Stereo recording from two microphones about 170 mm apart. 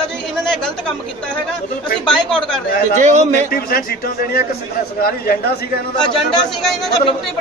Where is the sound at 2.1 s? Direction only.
5° left (ahead or behind).